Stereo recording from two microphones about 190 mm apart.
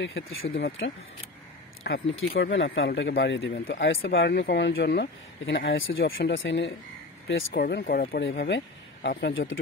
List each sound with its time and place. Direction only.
0.0 s speech: 85° left
1.8 s speech: 65° left (ahead or behind); by 4.1 s 80° left
4.1 s speech: 60° left (ahead or behind)
7.6 s speech: 50° left (ahead or behind)
8.4 s speech: 70° left (ahead or behind)